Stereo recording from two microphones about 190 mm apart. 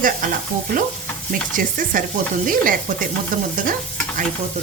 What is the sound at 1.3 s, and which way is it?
Speech, 45° right (ahead or behind).